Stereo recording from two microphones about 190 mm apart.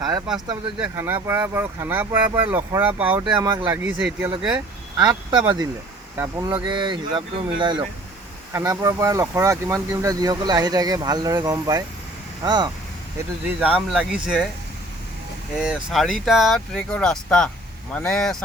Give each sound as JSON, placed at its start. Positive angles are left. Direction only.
{"t": 0.8, "sound": "speech", "side_deg": -10}
{"t": 3.2, "sound": "speech", "side_deg": -20}
{"t": 3.7, "sound": "speech", "side_deg": -10}
{"t": 4.9, "sound": "speech", "side_deg": -25}
{"t": 6.5, "sound": "speech", "side_deg": -25}
{"t": 13.6, "sound": "speech", "side_deg": -5}
{"t": 15.6, "sound": "speech", "side_deg": 0}